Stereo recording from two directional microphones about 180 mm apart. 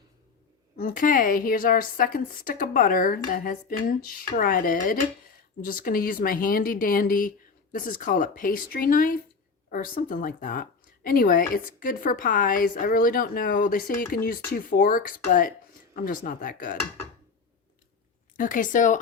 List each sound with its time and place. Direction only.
0.8 s speech: 50° left (ahead or behind)
18.3 s speech: 50° left (ahead or behind)